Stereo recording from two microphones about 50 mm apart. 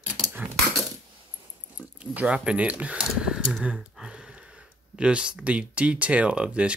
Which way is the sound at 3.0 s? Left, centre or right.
Centre.